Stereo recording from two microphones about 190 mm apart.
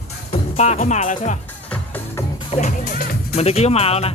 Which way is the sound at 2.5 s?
35° left (ahead or behind).